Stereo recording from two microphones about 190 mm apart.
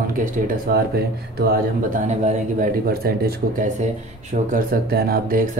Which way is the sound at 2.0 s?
40° right (ahead or behind).